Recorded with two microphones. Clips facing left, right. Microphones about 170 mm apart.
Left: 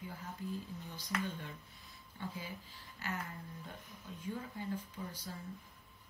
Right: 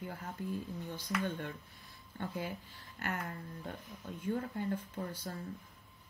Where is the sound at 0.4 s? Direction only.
55° right (ahead or behind).